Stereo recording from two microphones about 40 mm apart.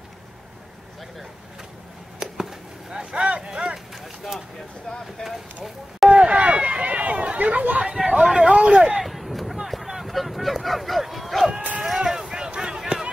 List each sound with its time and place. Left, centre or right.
2.2 s a sound: centre
3.9 s vehicle: centre
5.2 s speech: centre
6.0 s run: right
7.8 s hubbub: centre
8.1 s speech: centre
8.5 s speech: right
9.0 s a sound: centre; by 13.0 s right